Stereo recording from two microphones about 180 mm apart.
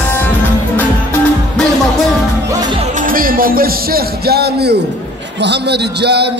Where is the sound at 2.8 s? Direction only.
50° right (ahead or behind); by 4.8 s 65° right (ahead or behind).